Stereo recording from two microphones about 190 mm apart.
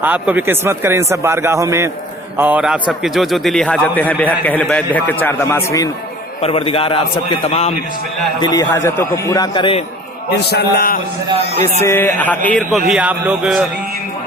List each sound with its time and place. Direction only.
0.0 s a man's voice: 10° right (ahead or behind); by 5.9 s 15° left (ahead or behind)
6.4 s a man's voice: 30° left (ahead or behind)
8.4 s a man's voice: 20° left (ahead or behind)
10.5 s a man's voice: 55° left (ahead or behind)
11.8 s a man's voice: 10° left (ahead or behind)
12.9 s speech: 5° right (ahead or behind)